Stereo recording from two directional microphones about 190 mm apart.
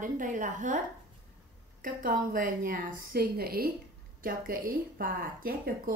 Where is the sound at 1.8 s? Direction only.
45° right (ahead or behind).